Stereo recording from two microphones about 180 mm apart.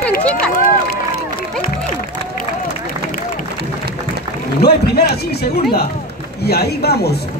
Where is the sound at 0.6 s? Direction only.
55° left (ahead or behind).